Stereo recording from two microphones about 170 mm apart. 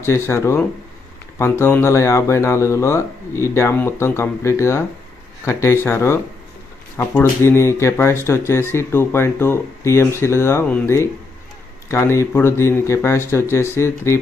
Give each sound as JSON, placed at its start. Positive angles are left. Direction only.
{"t": 0.0, "sound": "speech", "side_deg": 15}